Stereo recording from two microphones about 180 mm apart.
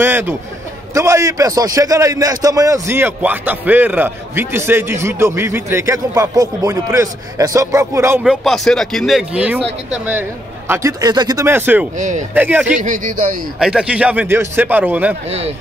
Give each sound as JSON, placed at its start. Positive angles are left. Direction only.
{"t": 0.0, "sound": "a man's voice", "side_deg": -10}
{"t": 8.2, "sound": "a man's voice", "side_deg": 0}
{"t": 12.0, "sound": "speech", "side_deg": -45}
{"t": 12.4, "sound": "a man's voice", "side_deg": -10}
{"t": 12.7, "sound": "speech", "side_deg": -45}
{"t": 13.6, "sound": "a man's voice", "side_deg": -5}
{"t": 15.2, "sound": "a man's voice", "side_deg": -35}